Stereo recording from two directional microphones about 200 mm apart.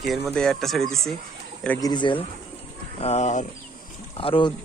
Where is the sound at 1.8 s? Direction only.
20° left (ahead or behind).